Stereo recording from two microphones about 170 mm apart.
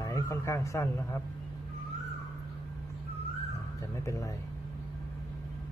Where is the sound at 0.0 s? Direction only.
20° left (ahead or behind).